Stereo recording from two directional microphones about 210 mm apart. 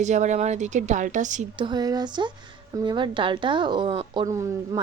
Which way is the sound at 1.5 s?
20° right (ahead or behind).